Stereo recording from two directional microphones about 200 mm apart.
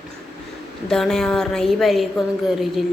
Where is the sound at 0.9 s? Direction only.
Centre (ahead or behind).